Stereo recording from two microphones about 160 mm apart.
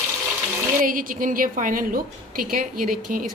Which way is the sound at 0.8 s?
60° right (ahead or behind).